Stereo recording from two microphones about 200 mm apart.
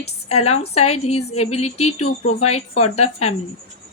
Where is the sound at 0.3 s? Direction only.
30° left (ahead or behind).